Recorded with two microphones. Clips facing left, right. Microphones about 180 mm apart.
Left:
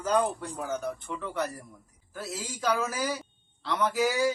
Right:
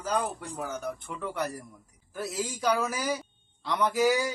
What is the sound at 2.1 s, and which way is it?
Speech, 15° right (ahead or behind).